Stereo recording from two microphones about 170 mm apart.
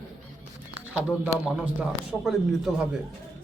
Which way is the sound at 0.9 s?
5° right (ahead or behind).